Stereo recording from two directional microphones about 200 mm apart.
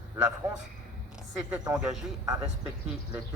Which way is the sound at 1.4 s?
5° right (ahead or behind).